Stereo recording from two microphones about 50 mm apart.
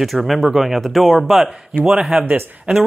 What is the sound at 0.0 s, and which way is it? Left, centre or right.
Speech, centre.